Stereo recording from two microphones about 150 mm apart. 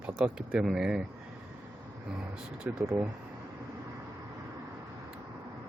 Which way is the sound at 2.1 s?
5° right (ahead or behind).